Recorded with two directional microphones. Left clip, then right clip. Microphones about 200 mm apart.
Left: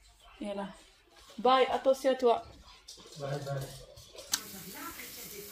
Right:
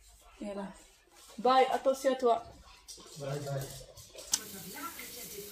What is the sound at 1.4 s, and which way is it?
Speech, 15° left (ahead or behind).